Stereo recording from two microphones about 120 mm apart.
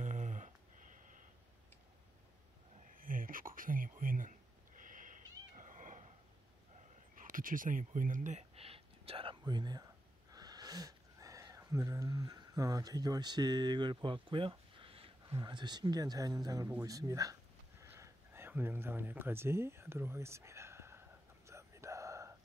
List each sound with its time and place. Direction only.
0.0 s a sound: 90° right
3.4 s speech: 25° right (ahead or behind)
4.8 s cat: 90° right
7.2 s speech: 90° right; by 9.4 s 50° right (ahead or behind)
9.5 s speech: 35° right (ahead or behind)
10.3 s a sound: 35° right (ahead or behind); by 15.3 s 50° right (ahead or behind)
15.3 s speech: 35° right (ahead or behind); by 21.0 s 20° right (ahead or behind)
21.5 s whispering: 25° right (ahead or behind)